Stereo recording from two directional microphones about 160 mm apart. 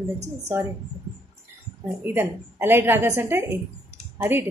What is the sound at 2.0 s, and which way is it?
A woman's voice, 15° right (ahead or behind).